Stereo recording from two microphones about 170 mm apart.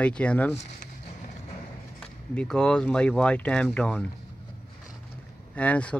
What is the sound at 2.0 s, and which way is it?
Speech, 5° left (ahead or behind).